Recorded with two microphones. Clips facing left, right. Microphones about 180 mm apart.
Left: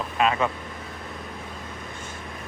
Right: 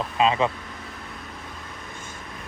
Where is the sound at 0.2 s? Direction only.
25° right (ahead or behind).